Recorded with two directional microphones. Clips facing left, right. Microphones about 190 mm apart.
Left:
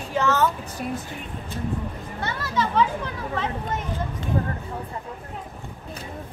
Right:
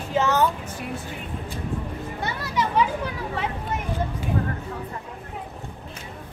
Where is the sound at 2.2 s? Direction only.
15° right (ahead or behind).